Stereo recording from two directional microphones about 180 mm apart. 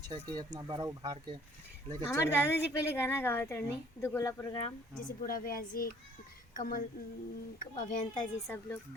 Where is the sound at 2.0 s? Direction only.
15° left (ahead or behind).